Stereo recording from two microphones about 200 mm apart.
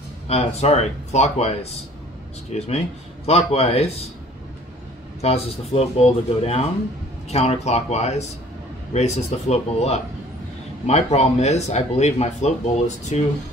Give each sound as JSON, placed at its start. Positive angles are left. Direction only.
{"t": 0.3, "sound": "speech", "side_deg": 30}
{"t": 5.2, "sound": "speech", "side_deg": 30}